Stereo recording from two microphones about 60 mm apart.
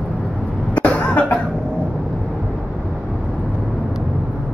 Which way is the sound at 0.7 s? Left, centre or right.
Left.